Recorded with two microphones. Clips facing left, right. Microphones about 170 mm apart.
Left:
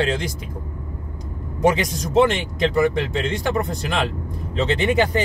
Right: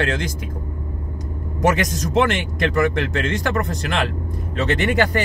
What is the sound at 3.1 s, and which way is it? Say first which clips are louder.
Speech: even; 15° left (ahead or behind).